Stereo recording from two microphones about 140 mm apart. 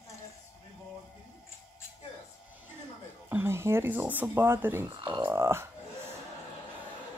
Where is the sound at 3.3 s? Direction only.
15° right (ahead or behind).